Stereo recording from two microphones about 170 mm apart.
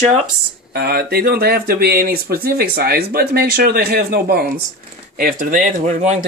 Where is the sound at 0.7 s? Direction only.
65° right (ahead or behind).